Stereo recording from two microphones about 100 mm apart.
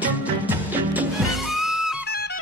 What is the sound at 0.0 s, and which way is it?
Music, 15° right (ahead or behind).